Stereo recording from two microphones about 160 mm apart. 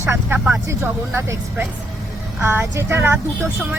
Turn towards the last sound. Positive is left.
turn(degrees=-15)  # may be behind; listen again after turning